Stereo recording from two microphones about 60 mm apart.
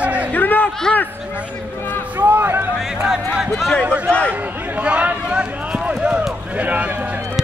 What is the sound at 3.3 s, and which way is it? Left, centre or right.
Speech, centre.